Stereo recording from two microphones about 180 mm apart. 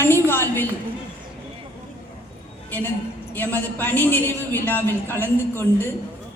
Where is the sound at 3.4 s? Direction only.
10° left (ahead or behind).